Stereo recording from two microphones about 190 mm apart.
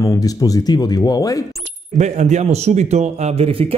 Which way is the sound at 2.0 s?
40° right (ahead or behind).